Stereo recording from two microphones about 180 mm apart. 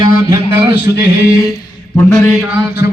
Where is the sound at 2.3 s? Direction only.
5° right (ahead or behind).